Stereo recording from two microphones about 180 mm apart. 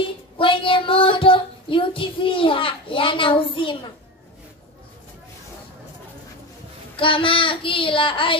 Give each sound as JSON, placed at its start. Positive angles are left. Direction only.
{"t": 0.0, "sound": "child singing", "side_deg": 30}
{"t": 7.0, "sound": "child singing", "side_deg": 30}